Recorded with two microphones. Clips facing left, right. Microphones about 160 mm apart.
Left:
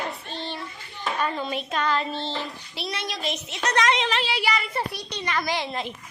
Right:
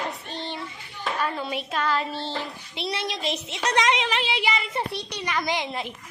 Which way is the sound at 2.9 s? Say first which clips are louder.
Right 2 dB; 30° right (ahead or behind).